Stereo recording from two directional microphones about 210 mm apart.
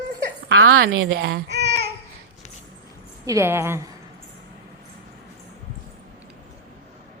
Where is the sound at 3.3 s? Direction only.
15° right (ahead or behind).